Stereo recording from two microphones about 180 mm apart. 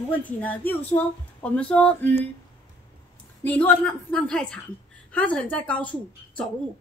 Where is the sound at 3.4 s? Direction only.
10° left (ahead or behind).